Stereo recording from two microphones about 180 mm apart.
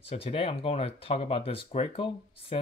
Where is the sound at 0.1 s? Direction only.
30° left (ahead or behind).